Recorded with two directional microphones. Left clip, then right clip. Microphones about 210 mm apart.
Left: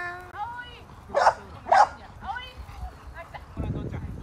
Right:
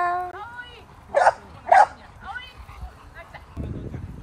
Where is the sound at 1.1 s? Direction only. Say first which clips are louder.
Right 3 dB; 35° right (ahead or behind).